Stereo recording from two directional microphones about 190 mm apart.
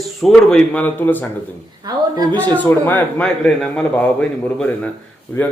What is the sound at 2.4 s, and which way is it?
A man's voice, 10° left (ahead or behind).